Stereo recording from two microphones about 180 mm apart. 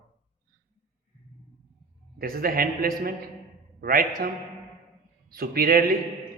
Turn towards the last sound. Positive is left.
turn(degrees=-55)  # may be behind; listen again after turning